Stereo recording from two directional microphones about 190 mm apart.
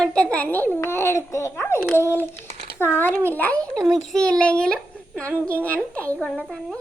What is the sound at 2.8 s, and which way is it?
A child's voice, 10° left (ahead or behind).